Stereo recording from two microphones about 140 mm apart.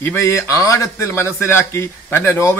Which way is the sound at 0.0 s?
15° left (ahead or behind).